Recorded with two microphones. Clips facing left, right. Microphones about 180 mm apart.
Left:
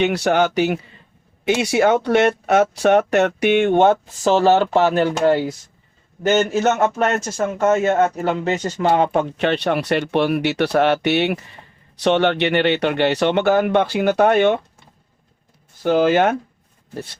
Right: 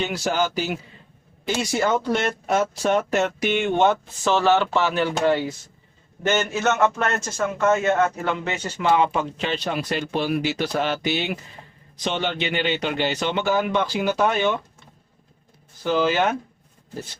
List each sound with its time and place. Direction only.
0.0 s speech: 65° left (ahead or behind)
4.2 s speech: 40° left (ahead or behind)
7.6 s speech: 45° left (ahead or behind); by 14.6 s 60° left (ahead or behind)
15.8 s speech: 50° left (ahead or behind)